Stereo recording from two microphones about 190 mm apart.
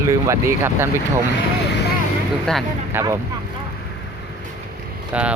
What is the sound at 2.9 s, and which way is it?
Speech, 15° right (ahead or behind).